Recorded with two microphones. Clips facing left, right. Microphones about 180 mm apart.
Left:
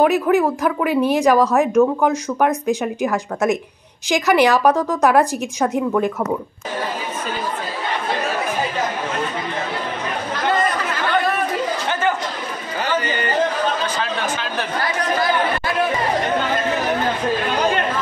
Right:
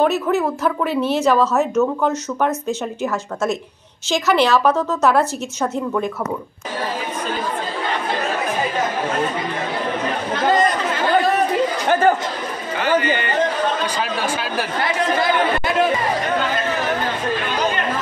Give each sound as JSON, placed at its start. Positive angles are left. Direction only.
{"t": 0.0, "sound": "a woman's voice", "side_deg": 10}
{"t": 13.9, "sound": "a sound", "side_deg": -10}
{"t": 14.8, "sound": "chatter", "side_deg": -25}